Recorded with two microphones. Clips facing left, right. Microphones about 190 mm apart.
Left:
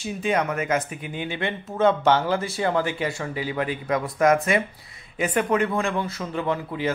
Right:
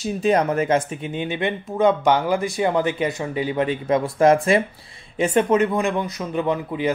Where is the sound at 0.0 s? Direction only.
35° right (ahead or behind).